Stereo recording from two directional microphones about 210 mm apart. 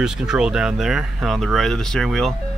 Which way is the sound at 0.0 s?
5° right (ahead or behind).